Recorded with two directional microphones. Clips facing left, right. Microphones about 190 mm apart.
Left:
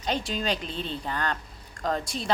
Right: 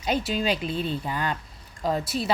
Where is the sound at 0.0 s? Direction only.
5° right (ahead or behind).